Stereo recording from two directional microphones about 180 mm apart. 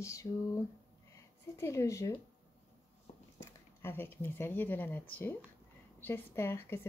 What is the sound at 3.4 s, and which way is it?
A woman's voice, 10° left (ahead or behind).